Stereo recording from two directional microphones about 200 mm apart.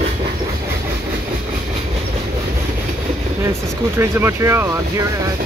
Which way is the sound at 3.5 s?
15° right (ahead or behind).